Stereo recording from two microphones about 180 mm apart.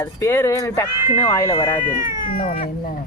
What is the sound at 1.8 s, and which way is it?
Speech, 50° left (ahead or behind).